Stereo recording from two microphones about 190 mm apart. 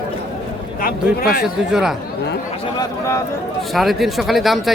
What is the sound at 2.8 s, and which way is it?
Speech, 15° left (ahead or behind).